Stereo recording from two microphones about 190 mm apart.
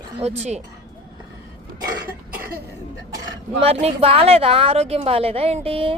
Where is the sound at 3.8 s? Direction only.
30° right (ahead or behind).